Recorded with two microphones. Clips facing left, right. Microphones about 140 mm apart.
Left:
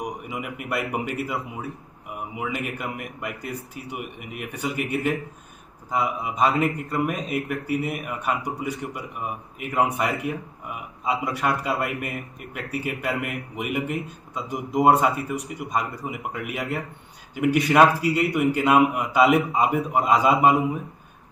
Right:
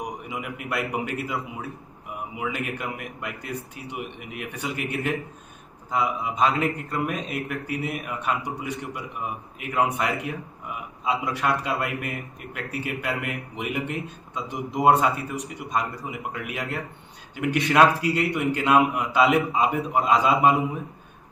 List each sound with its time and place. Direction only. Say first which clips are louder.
0.0 s a man's voice: left 1 dB; centre (ahead or behind)